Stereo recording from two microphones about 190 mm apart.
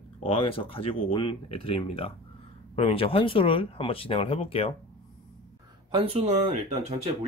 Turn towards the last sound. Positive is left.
turn(degrees=-35)  # may be behind; listen again after turning